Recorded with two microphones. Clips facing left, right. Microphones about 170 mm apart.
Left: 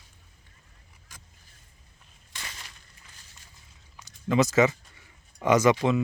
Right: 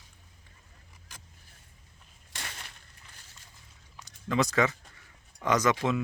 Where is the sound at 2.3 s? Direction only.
60° right (ahead or behind).